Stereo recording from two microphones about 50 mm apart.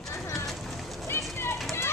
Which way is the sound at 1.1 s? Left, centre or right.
Left.